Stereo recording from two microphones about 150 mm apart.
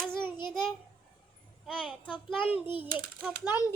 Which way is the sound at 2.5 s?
35° left (ahead or behind).